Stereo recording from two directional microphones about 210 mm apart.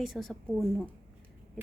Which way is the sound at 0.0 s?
Centre (ahead or behind).